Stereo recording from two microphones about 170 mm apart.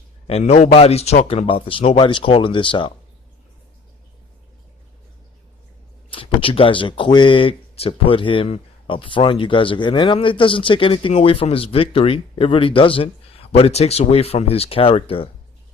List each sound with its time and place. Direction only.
0.3 s speech: 40° left (ahead or behind)
6.1 s speech: 30° left (ahead or behind)